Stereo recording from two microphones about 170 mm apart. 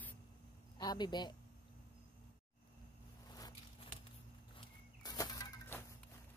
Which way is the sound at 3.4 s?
25° left (ahead or behind).